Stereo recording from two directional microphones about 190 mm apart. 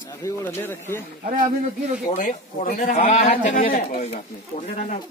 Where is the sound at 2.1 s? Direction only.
45° left (ahead or behind).